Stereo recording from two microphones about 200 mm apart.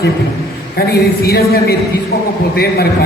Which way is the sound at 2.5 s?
50° left (ahead or behind).